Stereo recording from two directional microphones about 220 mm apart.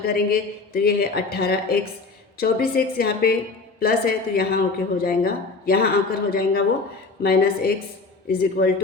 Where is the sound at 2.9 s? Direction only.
45° left (ahead or behind).